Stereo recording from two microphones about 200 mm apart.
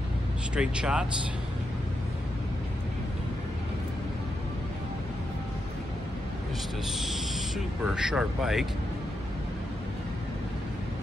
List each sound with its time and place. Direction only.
0.6 s speech: 5° right (ahead or behind)
7.0 s speech: centre (ahead or behind)